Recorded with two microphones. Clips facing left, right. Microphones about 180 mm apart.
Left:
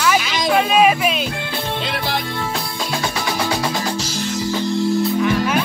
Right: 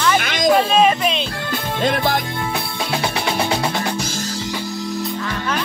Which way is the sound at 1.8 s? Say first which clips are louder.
Right 6 dB; 45° right (ahead or behind).